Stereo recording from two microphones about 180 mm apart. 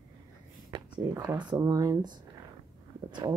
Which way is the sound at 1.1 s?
20° right (ahead or behind).